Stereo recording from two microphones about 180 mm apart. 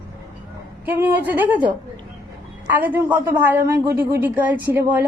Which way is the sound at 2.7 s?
10° right (ahead or behind).